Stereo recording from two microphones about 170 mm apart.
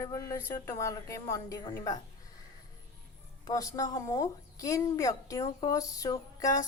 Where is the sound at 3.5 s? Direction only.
20° left (ahead or behind).